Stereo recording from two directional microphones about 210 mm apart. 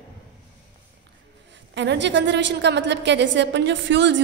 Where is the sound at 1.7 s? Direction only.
55° right (ahead or behind).